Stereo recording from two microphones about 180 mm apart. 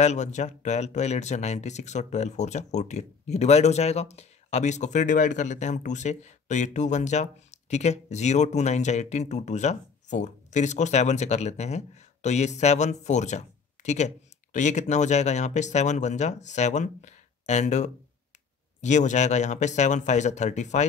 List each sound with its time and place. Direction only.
0.0 s speech: 40° left (ahead or behind)